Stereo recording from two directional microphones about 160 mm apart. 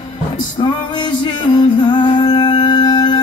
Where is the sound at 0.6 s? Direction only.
30° left (ahead or behind).